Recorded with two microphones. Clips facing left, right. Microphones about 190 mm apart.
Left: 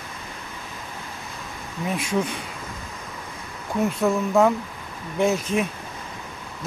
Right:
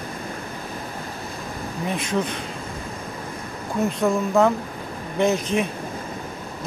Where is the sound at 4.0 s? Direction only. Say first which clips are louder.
Right 1 dB; 5° left (ahead or behind).